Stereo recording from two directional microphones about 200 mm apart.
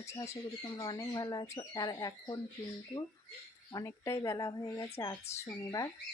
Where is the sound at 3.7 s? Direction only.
15° left (ahead or behind).